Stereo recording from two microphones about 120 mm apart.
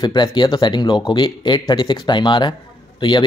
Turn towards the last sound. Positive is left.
turn(degrees=40)  # may be behind; listen again after turning